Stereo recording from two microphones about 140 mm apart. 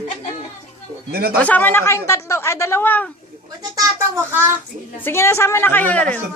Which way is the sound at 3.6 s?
25° right (ahead or behind).